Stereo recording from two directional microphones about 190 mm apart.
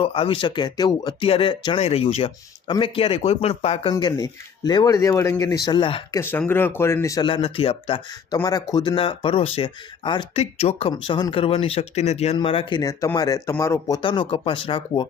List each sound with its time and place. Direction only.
0.0 s speech: 30° left (ahead or behind)
3.9 s speech: 20° left (ahead or behind)
6.1 s speech: 10° left (ahead or behind); by 15.0 s 25° left (ahead or behind)